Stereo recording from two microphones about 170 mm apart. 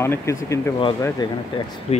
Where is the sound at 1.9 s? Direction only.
40° left (ahead or behind).